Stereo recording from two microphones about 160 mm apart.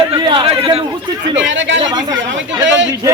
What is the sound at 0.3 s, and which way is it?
Chatter, 35° right (ahead or behind).